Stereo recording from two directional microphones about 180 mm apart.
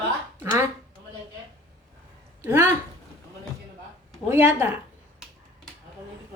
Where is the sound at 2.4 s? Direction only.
10° right (ahead or behind).